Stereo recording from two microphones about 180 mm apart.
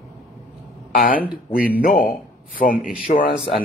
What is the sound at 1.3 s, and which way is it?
A man's voice, 55° left (ahead or behind).